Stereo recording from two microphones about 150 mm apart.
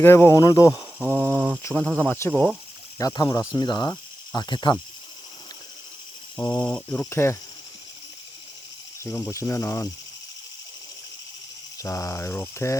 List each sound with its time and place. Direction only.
0.0 s speech: 15° left (ahead or behind)
1.0 s a sound: 10° left (ahead or behind)
1.6 s speech: 10° left (ahead or behind)
3.0 s speech: 25° left (ahead or behind)
6.3 s speech: 25° left (ahead or behind)
6.7 s speech: 10° left (ahead or behind)
9.0 s speech: 20° left (ahead or behind)
11.8 s speech: 20° left (ahead or behind)